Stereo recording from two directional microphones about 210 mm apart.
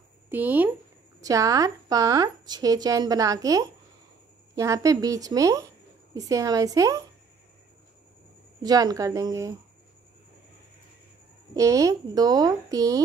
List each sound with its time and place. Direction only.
0.3 s speech: 10° right (ahead or behind)
8.6 s speech: 20° right (ahead or behind)
11.5 s speech: 15° right (ahead or behind)